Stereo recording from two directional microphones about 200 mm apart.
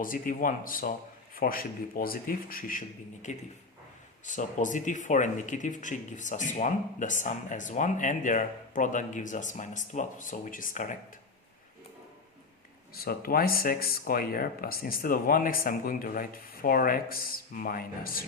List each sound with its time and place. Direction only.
0.0 s speech: 45° left (ahead or behind)
12.9 s speech: 50° left (ahead or behind)